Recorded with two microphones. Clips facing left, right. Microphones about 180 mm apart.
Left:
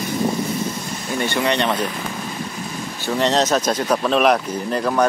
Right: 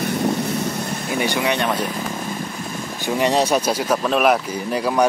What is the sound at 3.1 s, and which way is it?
Speech, 10° right (ahead or behind).